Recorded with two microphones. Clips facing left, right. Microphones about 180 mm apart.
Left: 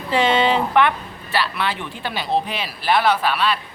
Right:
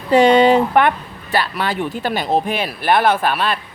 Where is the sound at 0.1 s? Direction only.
45° right (ahead or behind).